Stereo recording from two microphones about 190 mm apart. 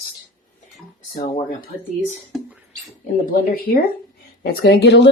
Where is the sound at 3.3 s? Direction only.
50° left (ahead or behind).